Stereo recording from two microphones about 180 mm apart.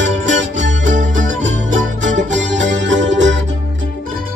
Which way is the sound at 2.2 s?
90° right.